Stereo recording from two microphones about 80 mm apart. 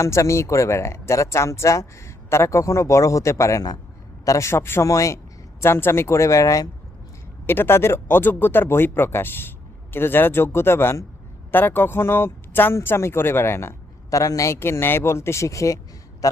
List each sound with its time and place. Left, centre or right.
0.0 s speech: left
7.4 s a man's voice: left